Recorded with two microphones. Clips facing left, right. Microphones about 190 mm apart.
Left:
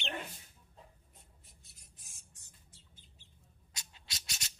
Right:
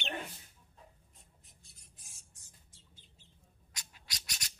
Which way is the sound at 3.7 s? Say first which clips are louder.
Even; 25° left (ahead or behind).